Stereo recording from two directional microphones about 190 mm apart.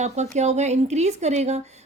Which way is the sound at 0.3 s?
35° right (ahead or behind).